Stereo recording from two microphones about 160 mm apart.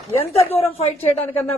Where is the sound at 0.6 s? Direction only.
40° left (ahead or behind).